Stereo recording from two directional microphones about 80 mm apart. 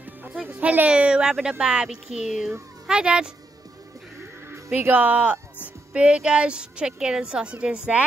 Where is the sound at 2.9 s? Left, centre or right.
Centre.